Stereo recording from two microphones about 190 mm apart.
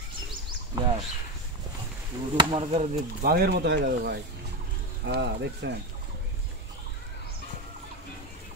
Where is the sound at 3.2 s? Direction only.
55° right (ahead or behind).